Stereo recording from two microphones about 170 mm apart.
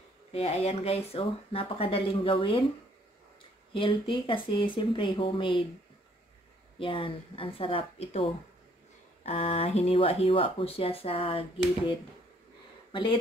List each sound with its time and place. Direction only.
0.3 s speech: 35° left (ahead or behind)
3.7 s speech: 30° left (ahead or behind)
6.8 s speech: 30° left (ahead or behind)
12.9 s speech: 30° left (ahead or behind)